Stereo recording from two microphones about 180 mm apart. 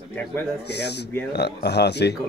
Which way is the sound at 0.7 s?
70° left (ahead or behind).